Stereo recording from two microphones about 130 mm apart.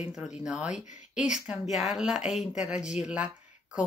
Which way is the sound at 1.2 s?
5° right (ahead or behind).